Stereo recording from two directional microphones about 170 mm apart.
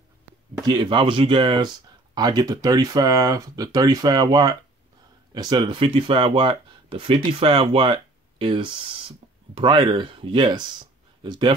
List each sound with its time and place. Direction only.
0.6 s speech: 25° right (ahead or behind)